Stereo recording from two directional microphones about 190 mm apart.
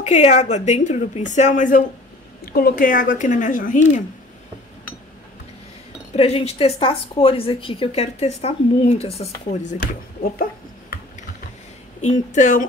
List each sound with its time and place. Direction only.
0.0 s speech: 35° left (ahead or behind)
6.1 s speech: 30° left (ahead or behind); by 11.0 s 50° left (ahead or behind)
12.0 s speech: 40° left (ahead or behind)